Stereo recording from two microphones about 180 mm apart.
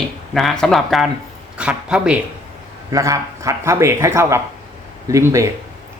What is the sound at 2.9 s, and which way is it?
Speech, 20° right (ahead or behind).